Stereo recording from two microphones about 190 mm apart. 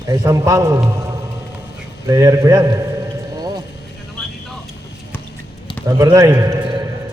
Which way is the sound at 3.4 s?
20° right (ahead or behind).